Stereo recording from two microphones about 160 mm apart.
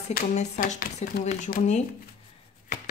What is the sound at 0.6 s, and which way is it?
Speech, 60° left (ahead or behind).